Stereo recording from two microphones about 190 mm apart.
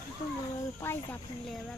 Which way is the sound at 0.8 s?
15° left (ahead or behind).